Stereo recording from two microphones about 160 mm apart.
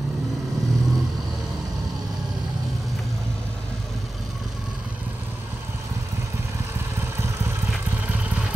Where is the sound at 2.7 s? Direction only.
Centre (ahead or behind).